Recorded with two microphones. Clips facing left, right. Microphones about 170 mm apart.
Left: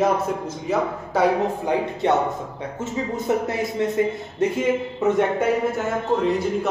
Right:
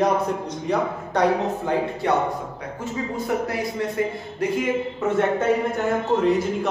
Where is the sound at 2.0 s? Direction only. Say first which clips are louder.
Left 4 dB; 20° left (ahead or behind).